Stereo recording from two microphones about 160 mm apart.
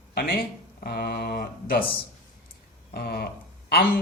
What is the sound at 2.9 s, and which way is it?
Speech, 80° left.